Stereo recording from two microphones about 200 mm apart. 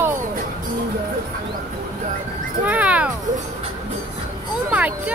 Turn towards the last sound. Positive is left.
turn(degrees=-5)  # may be behind; listen again after turning